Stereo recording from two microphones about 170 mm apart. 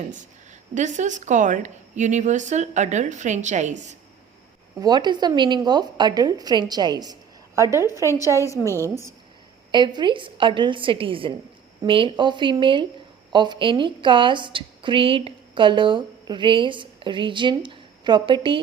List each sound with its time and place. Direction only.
0.7 s speech: 45° right (ahead or behind)
4.8 s a woman's voice: 25° right (ahead or behind)
8.4 s a woman's voice: 15° left (ahead or behind)
9.7 s a woman's voice: 25° right (ahead or behind)